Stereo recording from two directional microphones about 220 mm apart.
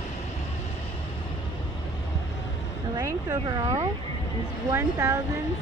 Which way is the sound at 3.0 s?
15° right (ahead or behind).